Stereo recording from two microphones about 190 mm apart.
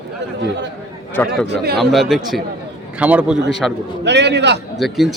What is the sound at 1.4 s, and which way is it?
Speech, 60° right (ahead or behind).